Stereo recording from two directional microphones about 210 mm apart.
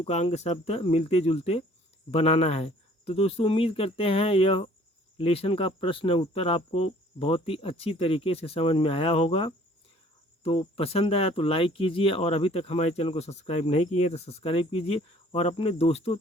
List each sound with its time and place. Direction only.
0.0 s speech: 30° left (ahead or behind)